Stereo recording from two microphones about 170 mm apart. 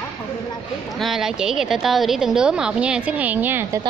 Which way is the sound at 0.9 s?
Centre (ahead or behind).